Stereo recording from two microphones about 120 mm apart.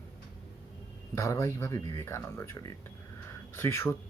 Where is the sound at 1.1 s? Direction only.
25° left (ahead or behind).